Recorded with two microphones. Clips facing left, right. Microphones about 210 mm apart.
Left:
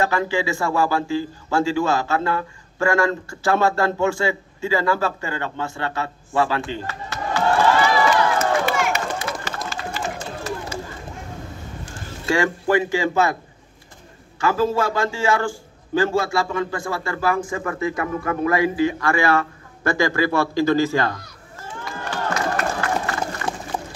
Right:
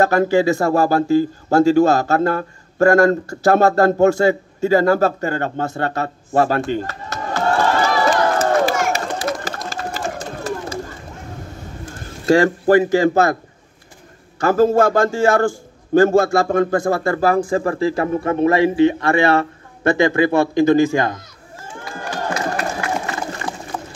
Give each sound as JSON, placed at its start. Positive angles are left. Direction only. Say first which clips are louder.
{"t": 0.0, "sound": "speech", "louder": "right 7 dB", "side_deg": -40}
{"t": 10.1, "sound": "run", "louder": "right 3 dB", "side_deg": -35}
{"t": 11.9, "sound": "speech", "louder": "right 8 dB", "side_deg": -40}
{"t": 14.4, "sound": "a man's voice", "louder": "right 6 dB", "side_deg": -45}
{"t": 22.0, "sound": "crowd", "louder": "right 1 dB", "side_deg": -15}